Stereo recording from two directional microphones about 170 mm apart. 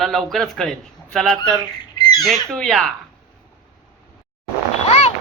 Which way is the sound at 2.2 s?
Centre (ahead or behind).